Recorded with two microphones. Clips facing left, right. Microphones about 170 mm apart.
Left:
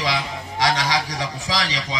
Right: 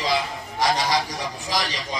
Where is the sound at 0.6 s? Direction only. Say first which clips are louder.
Even; 90° left.